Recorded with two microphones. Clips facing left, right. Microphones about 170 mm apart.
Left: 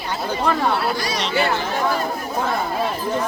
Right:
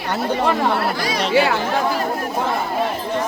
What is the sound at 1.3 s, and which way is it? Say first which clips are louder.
Speech: right 4 dB; 90° right.